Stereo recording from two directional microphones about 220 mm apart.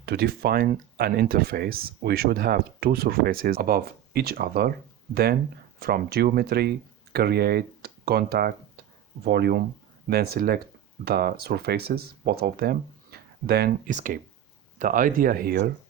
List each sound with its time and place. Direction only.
0.0 s speech: 45° right (ahead or behind)